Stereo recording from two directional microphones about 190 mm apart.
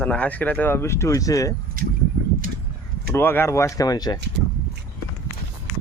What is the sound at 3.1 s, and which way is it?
Speech, 10° left (ahead or behind).